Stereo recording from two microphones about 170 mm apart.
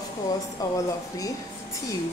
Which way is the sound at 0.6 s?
20° left (ahead or behind).